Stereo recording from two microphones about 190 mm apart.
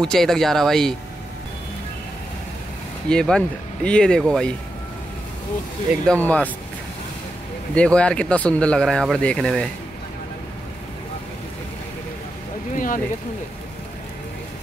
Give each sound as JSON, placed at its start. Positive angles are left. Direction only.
{"t": 0.0, "sound": "speech", "side_deg": 0}
{"t": 3.1, "sound": "speech", "side_deg": 5}
{"t": 6.0, "sound": "speech", "side_deg": 10}
{"t": 7.7, "sound": "speech", "side_deg": 5}
{"t": 12.7, "sound": "speech", "side_deg": 45}